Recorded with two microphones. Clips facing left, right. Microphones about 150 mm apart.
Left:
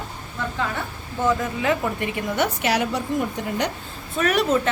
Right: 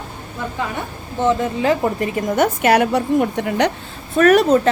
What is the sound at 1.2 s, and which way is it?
A woman's voice, 25° right (ahead or behind).